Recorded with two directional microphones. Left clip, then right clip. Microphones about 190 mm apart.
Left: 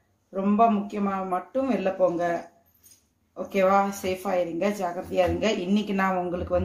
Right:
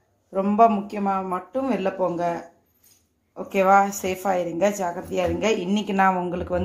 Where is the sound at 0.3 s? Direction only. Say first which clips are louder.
Right 4 dB; 30° right (ahead or behind).